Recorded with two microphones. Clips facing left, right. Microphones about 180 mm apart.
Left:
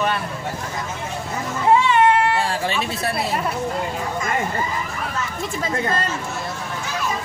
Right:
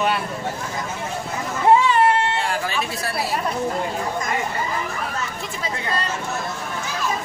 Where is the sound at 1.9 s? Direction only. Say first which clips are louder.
Left 2 dB; 30° right (ahead or behind).